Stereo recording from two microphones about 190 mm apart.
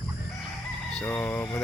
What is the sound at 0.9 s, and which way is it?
Speech, 10° left (ahead or behind).